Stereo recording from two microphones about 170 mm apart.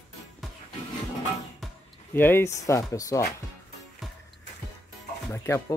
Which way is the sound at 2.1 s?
10° left (ahead or behind).